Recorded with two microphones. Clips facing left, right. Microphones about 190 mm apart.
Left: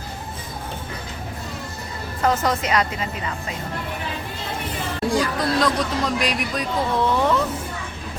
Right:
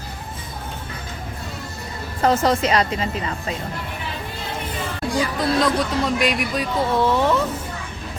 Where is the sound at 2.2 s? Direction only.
30° right (ahead or behind).